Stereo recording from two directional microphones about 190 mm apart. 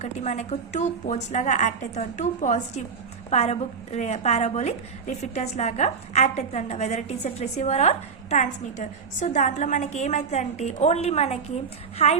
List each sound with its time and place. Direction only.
0.0 s a woman's voice: 35° left (ahead or behind)